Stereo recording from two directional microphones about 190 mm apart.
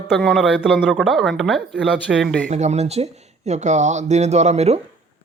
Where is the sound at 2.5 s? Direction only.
35° right (ahead or behind).